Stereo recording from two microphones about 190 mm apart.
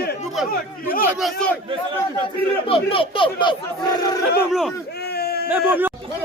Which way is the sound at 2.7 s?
30° left (ahead or behind).